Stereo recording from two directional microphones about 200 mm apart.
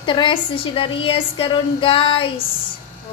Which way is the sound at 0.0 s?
25° left (ahead or behind).